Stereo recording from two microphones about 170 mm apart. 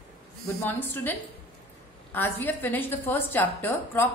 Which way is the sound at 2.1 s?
10° left (ahead or behind).